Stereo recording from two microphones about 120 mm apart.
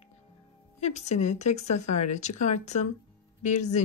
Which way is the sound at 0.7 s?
70° left (ahead or behind).